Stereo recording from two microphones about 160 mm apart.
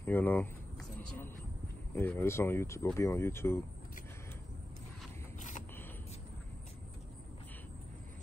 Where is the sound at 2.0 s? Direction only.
15° left (ahead or behind).